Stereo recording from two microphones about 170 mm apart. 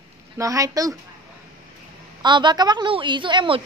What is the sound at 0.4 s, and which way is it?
Speech, 20° right (ahead or behind).